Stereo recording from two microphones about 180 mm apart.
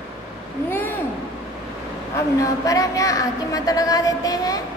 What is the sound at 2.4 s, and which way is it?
Speech, 20° left (ahead or behind).